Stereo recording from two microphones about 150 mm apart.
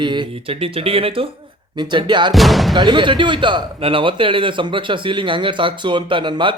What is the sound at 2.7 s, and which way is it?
A man's voice, 30° right (ahead or behind).